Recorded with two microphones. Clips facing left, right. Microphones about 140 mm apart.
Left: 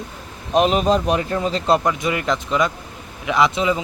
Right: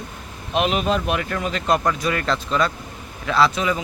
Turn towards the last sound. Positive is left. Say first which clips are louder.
# left 1 dB
turn(degrees=20)  # may be behind; listen again after turning